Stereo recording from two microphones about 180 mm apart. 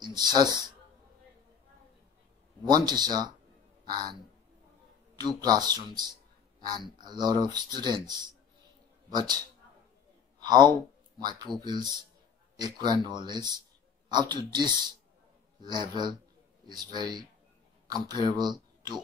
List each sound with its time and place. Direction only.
0.0 s speech: 25° right (ahead or behind)
2.7 s speech: 20° right (ahead or behind)
5.2 s speech: 20° right (ahead or behind)
9.1 s speech: 25° right (ahead or behind)
10.4 s speech: 25° right (ahead or behind)